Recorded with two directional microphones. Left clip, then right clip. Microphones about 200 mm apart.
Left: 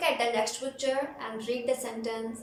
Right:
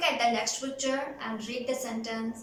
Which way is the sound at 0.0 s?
25° left (ahead or behind).